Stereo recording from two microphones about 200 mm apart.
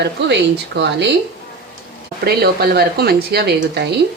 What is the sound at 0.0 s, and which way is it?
Speech, 55° right (ahead or behind).